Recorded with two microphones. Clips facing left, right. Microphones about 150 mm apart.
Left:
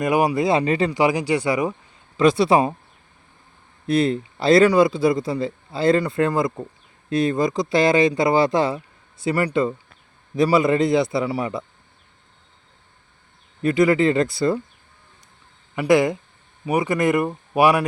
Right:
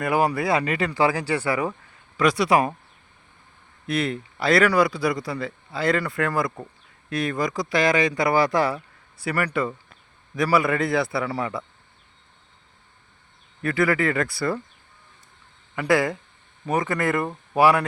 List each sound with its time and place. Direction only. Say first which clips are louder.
0.0 s speech: left 3 dB; 15° left (ahead or behind)
0.9 s speech: left 3 dB; 15° left (ahead or behind)
2.1 s speech: left 4 dB; 25° left (ahead or behind)
3.8 s speech: left 6 dB; 30° left (ahead or behind)
13.6 s speech: left 5 dB; 20° left (ahead or behind)
15.7 s speech: left 4 dB; 15° left (ahead or behind)